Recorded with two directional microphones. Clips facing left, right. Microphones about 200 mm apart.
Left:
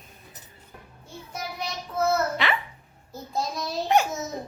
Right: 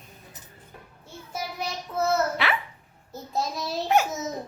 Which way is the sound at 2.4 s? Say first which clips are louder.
Even; 5° right (ahead or behind).